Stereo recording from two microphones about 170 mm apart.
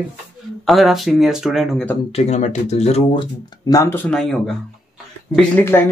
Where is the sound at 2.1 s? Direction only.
40° left (ahead or behind).